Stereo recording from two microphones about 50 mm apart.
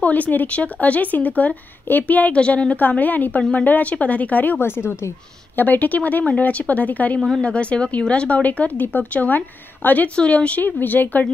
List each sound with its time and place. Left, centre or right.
0.0 s a woman's voice: left
4.6 s speech: left
5.6 s a woman's voice: left
7.2 s speech: centre
7.4 s a woman's voice: left
10.1 s speech: left
10.6 s a woman's voice: left